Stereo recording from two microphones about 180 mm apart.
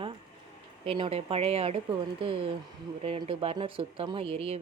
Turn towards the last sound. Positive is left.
turn(degrees=-35)  # may be behind; listen again after turning